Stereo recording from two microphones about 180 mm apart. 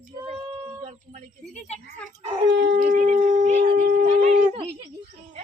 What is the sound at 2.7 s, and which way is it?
Shofar, 45° right (ahead or behind).